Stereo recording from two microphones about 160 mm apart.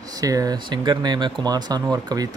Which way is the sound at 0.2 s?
20° right (ahead or behind).